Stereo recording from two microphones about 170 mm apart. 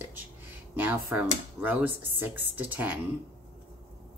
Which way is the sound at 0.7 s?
10° right (ahead or behind).